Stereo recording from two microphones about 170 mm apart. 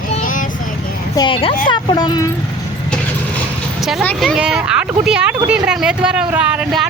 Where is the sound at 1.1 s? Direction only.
30° left (ahead or behind).